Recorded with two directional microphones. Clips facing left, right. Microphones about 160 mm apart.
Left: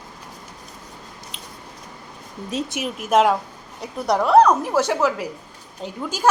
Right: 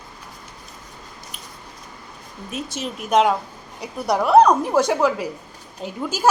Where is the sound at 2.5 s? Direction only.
30° left (ahead or behind).